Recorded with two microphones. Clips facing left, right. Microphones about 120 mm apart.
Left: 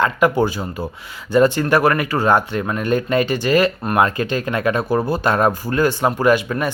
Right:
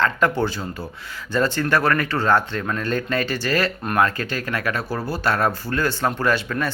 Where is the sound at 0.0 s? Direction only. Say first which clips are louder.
Left 4 dB; 15° left (ahead or behind).